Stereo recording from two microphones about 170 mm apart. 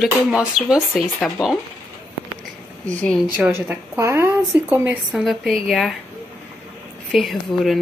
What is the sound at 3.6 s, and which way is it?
Speech, 10° right (ahead or behind).